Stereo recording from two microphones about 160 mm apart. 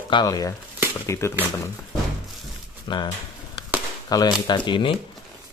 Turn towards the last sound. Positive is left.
turn(degrees=30)  # may be behind; listen again after turning